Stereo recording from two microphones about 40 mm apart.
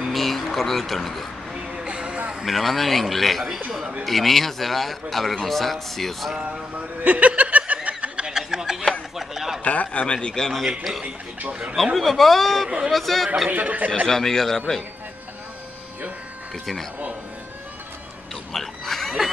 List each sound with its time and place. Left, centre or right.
0.0 s music: centre
1.7 s vehicle: right
2.4 s a man's voice: centre
7.0 s snicker: right
8.3 s a sound: centre
9.1 s speech: centre
9.6 s a man's voice: left
10.1 s a man's voice: centre
10.8 s a man's voice: centre
13.5 s speech: right
14.0 s a man's voice: centre
18.5 s a sound: centre